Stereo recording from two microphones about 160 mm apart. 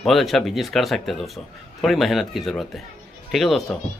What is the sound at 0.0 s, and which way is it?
Speech, centre (ahead or behind).